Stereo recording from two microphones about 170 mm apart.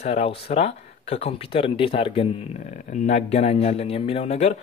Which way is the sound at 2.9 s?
45° left (ahead or behind).